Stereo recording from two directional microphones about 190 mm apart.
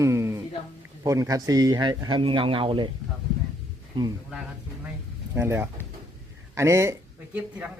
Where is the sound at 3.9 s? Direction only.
25° right (ahead or behind).